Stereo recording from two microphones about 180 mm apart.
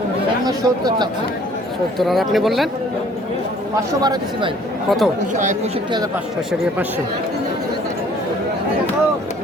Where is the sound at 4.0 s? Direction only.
20° right (ahead or behind).